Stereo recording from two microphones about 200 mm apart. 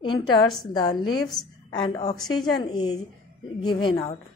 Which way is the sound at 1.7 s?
25° left (ahead or behind).